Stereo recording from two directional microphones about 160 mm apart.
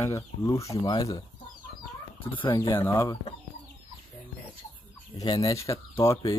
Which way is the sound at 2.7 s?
15° left (ahead or behind).